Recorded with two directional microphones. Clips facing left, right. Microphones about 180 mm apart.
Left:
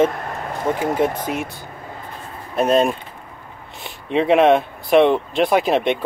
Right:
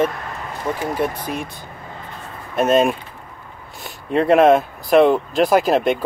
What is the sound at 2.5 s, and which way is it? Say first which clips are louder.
Speech: right 1 dB; centre (ahead or behind).